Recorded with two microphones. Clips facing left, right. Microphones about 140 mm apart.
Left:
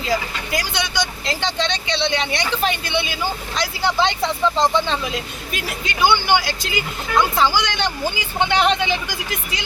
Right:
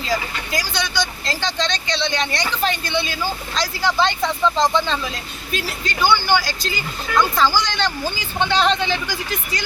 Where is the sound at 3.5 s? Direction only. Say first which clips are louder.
Even; 15° left (ahead or behind).